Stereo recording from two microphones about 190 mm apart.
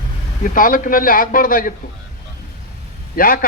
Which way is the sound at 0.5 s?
45° left (ahead or behind).